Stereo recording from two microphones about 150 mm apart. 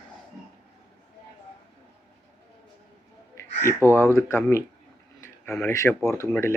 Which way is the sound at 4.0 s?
15° left (ahead or behind).